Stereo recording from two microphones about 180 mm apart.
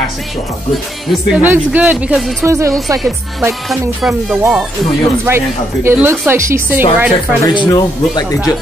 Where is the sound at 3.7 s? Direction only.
Centre (ahead or behind).